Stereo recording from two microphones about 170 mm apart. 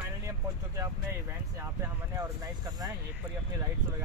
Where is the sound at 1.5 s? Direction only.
15° right (ahead or behind).